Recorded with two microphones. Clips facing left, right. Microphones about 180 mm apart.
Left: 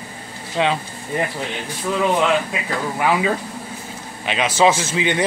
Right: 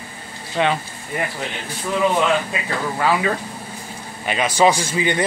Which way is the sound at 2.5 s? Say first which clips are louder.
Even; 15° left (ahead or behind).